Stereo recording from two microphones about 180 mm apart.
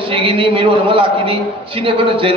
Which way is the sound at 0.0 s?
30° right (ahead or behind).